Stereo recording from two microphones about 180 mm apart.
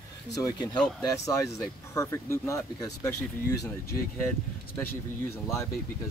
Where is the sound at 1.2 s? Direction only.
15° left (ahead or behind).